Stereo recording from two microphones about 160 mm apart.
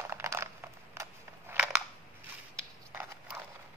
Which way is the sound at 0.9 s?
15° right (ahead or behind).